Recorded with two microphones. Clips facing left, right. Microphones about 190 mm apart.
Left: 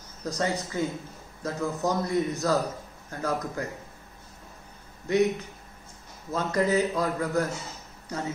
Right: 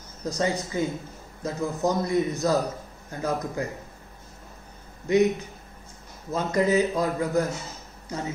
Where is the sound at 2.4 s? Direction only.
15° right (ahead or behind).